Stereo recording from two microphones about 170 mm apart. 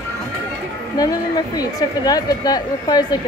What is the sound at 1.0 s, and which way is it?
Speech, 20° left (ahead or behind).